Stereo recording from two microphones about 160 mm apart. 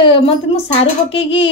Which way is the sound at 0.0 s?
35° left (ahead or behind).